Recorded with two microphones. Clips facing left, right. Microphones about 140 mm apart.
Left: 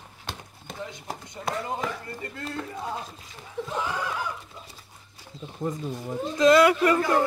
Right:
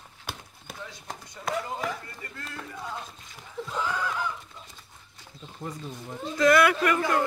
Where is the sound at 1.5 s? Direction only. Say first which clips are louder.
Even; centre (ahead or behind).